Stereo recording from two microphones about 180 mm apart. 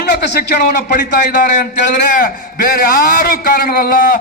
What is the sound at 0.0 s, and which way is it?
Speech, 65° left (ahead or behind).